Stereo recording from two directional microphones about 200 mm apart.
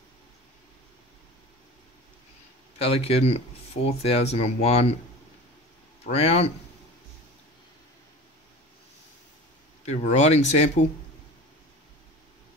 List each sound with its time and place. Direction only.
2.8 s speech: 30° left (ahead or behind)
6.0 s speech: 30° left (ahead or behind)
9.8 s speech: 35° left (ahead or behind)